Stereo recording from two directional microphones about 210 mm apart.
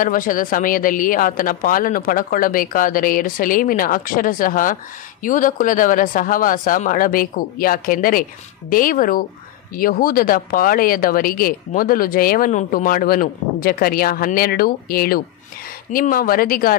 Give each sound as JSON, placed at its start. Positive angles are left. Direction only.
{"t": 0.0, "sound": "speech", "side_deg": 40}